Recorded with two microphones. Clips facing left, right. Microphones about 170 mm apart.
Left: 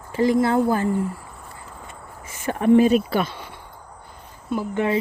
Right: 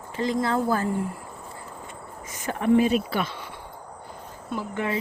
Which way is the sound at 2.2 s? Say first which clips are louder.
Left 4 dB; 25° left (ahead or behind).